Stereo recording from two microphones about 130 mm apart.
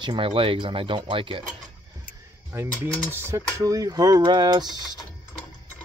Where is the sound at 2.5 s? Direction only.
20° right (ahead or behind).